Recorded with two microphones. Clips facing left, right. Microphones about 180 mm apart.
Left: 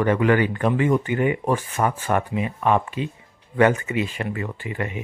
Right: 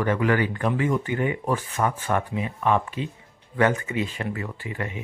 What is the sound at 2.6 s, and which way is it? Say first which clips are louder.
Speech: left 2 dB; 15° left (ahead or behind).